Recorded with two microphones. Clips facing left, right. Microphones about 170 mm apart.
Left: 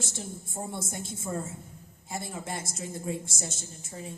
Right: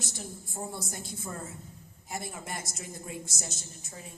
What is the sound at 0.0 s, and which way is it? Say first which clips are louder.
A woman's voice: left 3 dB; 25° left (ahead or behind).